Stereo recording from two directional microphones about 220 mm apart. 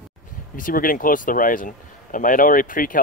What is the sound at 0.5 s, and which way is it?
Speech, 40° left (ahead or behind).